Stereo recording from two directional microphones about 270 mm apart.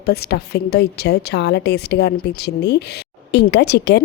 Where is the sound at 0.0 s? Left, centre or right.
Left.